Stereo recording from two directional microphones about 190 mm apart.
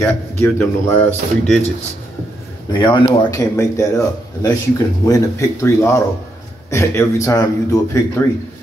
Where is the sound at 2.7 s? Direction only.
25° left (ahead or behind).